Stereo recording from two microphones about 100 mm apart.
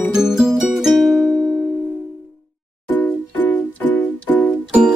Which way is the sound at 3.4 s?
15° left (ahead or behind).